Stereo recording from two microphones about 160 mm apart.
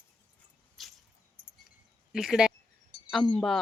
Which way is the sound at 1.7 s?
5° right (ahead or behind).